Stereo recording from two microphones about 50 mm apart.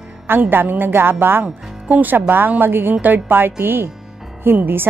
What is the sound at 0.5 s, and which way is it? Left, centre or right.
Speech, right.